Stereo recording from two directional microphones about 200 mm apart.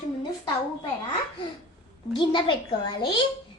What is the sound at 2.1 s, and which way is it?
Speech, 25° left (ahead or behind).